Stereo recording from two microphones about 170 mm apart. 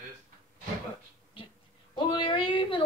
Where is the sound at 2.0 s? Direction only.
30° left (ahead or behind).